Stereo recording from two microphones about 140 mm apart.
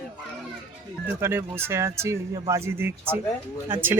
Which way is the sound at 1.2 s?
15° right (ahead or behind).